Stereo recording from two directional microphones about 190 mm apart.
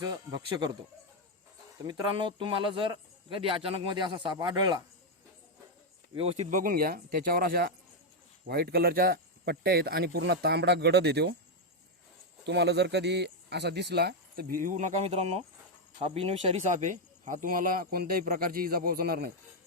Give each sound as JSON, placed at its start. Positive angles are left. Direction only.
{"t": 0.0, "sound": "speech", "side_deg": -25}
{"t": 1.8, "sound": "speech", "side_deg": -25}
{"t": 6.1, "sound": "speech", "side_deg": -30}
{"t": 12.5, "sound": "speech", "side_deg": -65}